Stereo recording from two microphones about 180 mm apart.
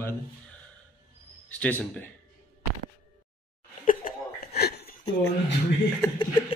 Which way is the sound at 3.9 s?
55° left (ahead or behind).